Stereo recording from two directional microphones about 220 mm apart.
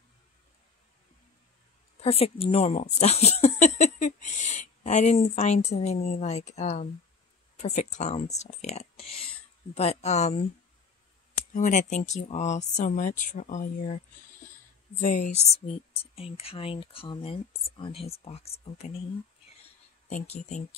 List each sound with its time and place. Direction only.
2.0 s speech: 25° left (ahead or behind)
20.1 s speech: 30° left (ahead or behind)